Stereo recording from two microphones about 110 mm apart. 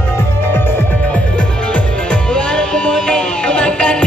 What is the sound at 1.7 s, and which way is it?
Music, 10° left (ahead or behind).